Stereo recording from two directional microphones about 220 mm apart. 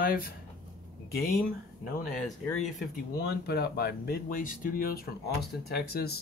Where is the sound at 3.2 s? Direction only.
45° left (ahead or behind).